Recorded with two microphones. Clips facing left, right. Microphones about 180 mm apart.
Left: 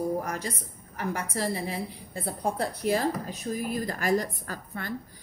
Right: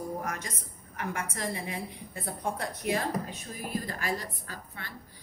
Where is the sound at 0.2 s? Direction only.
35° left (ahead or behind).